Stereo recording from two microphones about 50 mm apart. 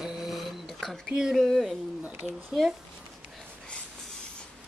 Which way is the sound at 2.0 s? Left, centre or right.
Right.